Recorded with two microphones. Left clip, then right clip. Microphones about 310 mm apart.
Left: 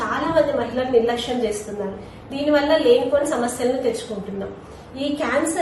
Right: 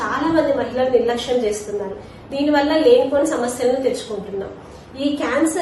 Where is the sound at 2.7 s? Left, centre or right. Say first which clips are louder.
Right 3 dB; centre.